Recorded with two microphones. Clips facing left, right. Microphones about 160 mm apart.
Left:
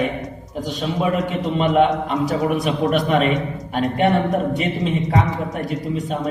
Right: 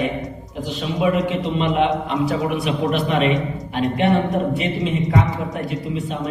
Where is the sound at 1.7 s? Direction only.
40° left (ahead or behind).